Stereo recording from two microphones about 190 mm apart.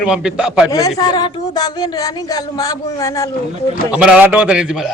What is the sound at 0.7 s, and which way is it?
Speech, 20° left (ahead or behind).